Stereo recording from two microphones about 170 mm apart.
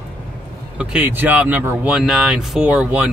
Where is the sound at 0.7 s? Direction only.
10° right (ahead or behind).